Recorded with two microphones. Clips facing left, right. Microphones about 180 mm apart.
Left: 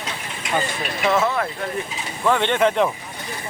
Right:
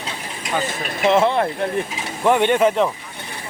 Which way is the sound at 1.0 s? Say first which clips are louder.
Right 4 dB; 25° right (ahead or behind).